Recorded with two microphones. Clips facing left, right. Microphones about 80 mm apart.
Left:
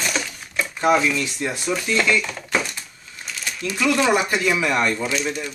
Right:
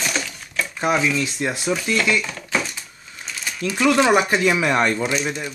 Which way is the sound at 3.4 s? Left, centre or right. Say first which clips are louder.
Right 3 dB; right.